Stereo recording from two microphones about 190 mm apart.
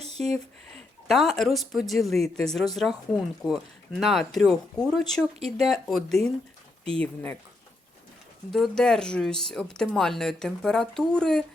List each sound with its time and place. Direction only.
0.0 s a sound: 35° right (ahead or behind)
1.0 s speech: centre (ahead or behind)
8.5 s speech: 5° left (ahead or behind)